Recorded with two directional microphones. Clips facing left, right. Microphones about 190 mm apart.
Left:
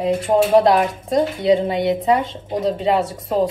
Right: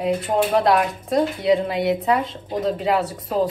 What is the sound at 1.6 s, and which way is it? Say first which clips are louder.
Speech: left 2 dB; centre (ahead or behind).